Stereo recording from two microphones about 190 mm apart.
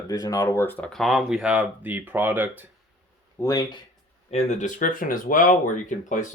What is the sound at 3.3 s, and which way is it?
Speech, 20° left (ahead or behind).